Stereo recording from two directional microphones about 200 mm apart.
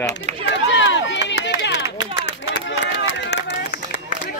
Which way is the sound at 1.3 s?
60° left (ahead or behind).